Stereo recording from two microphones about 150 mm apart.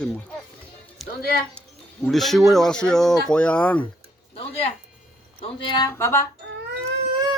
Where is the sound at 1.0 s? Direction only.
Centre (ahead or behind).